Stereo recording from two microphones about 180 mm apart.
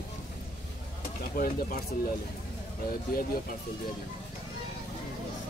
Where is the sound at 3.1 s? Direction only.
55° left (ahead or behind).